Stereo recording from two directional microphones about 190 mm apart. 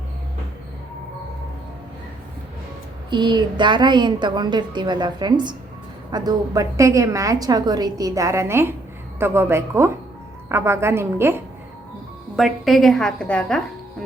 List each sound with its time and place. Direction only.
3.1 s a woman's voice: 25° right (ahead or behind)
12.4 s a woman's voice: centre (ahead or behind)